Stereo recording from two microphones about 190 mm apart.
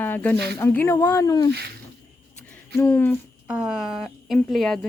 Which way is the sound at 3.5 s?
5° right (ahead or behind).